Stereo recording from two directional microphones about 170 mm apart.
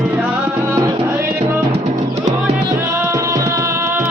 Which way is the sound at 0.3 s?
15° right (ahead or behind).